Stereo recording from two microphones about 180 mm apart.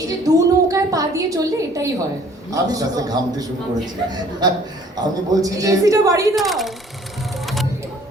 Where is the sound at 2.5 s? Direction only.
20° right (ahead or behind).